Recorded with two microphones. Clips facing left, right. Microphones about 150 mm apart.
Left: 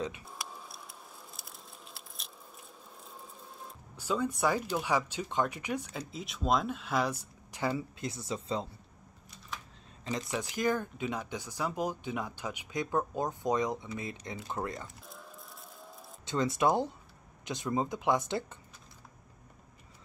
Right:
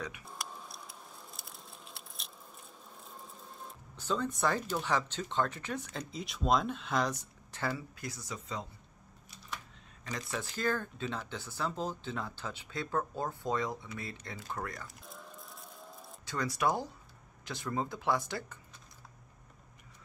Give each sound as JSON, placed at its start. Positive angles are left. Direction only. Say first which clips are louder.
{"t": 0.3, "sound": "a sound", "louder": "even", "side_deg": 0}
{"t": 3.1, "sound": "speech", "louder": "even", "side_deg": 0}
{"t": 10.0, "sound": "speech", "louder": "left 4 dB", "side_deg": 20}
{"t": 15.0, "sound": "music", "louder": "even", "side_deg": 0}
{"t": 16.3, "sound": "speech", "louder": "left 4 dB", "side_deg": 25}